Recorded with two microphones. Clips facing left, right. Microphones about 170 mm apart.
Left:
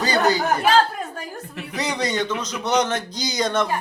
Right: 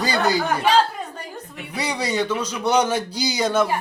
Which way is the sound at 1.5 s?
10° right (ahead or behind).